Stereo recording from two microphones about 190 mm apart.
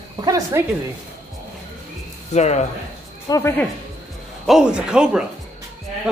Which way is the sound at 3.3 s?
15° left (ahead or behind).